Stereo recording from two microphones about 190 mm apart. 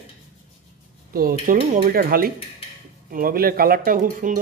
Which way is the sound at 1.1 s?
50° right (ahead or behind).